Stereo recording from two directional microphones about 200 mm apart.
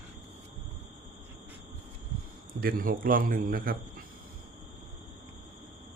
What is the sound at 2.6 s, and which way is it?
A man's voice, 45° right (ahead or behind).